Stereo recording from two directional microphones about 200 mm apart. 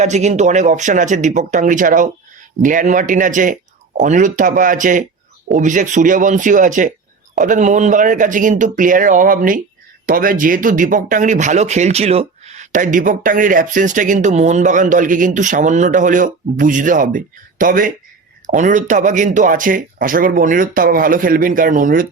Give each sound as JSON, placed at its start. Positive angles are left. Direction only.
{"t": 0.0, "sound": "speech", "side_deg": -35}